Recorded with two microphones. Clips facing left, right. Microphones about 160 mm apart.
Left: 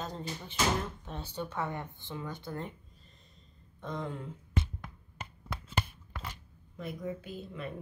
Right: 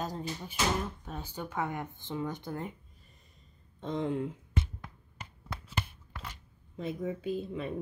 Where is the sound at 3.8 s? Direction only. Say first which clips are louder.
Right 5 dB; 25° right (ahead or behind).